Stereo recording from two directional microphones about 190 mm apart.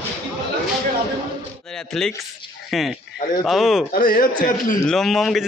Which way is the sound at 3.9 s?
50° left (ahead or behind).